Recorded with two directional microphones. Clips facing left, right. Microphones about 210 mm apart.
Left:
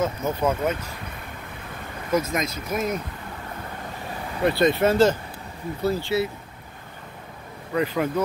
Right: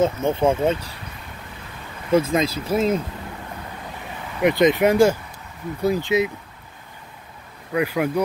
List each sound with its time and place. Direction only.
0.0 s speech: 25° right (ahead or behind)
2.0 s speech: 30° right (ahead or behind)
4.4 s speech: 15° right (ahead or behind)
7.7 s speech: 10° right (ahead or behind)